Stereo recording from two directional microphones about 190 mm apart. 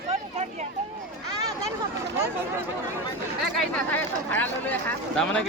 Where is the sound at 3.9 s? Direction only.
10° left (ahead or behind).